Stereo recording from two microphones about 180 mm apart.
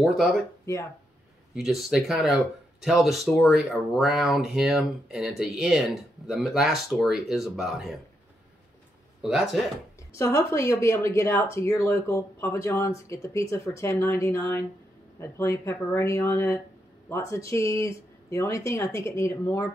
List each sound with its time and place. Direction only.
1.5 s speech: centre (ahead or behind)
9.2 s speech: centre (ahead or behind)
10.1 s speech: 15° left (ahead or behind)